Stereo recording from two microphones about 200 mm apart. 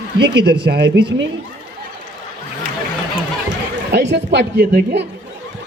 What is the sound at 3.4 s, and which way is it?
Speech, 60° right (ahead or behind).